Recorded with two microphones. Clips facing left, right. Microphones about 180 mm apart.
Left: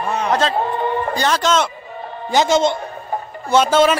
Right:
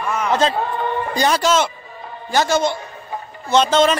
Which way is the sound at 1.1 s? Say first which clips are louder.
Right 3 dB; 10° right (ahead or behind).